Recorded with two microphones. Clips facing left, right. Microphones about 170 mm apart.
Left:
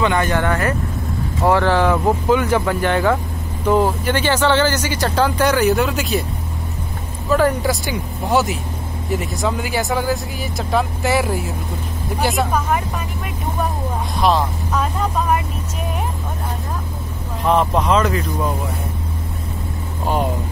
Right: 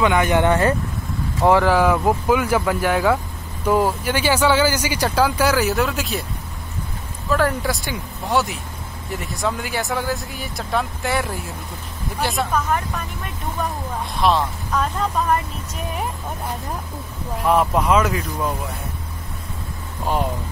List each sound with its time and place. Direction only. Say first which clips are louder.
0.0 s speech: right 1 dB; 15° right (ahead or behind)
1.4 s speech: even; 10° right (ahead or behind)
7.2 s speech: left 4 dB; centre (ahead or behind)
14.1 s speech: left 1 dB; centre (ahead or behind)
17.5 s speech: left 1 dB; 5° right (ahead or behind)